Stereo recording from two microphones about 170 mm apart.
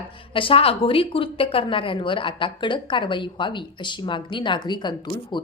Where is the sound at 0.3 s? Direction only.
30° left (ahead or behind).